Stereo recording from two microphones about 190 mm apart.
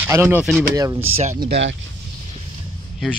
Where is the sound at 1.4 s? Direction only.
65° right (ahead or behind).